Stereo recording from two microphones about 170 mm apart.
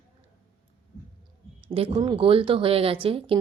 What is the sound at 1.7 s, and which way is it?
Speech, 30° right (ahead or behind).